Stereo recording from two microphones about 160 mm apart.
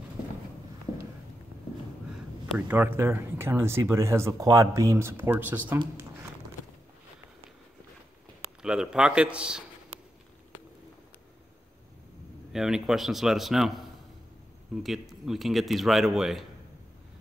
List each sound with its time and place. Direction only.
2.5 s speech: 10° right (ahead or behind)
8.6 s speech: 5° right (ahead or behind)
12.5 s speech: 5° right (ahead or behind)